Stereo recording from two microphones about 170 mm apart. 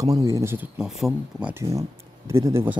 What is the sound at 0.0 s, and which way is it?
Speech, 20° right (ahead or behind).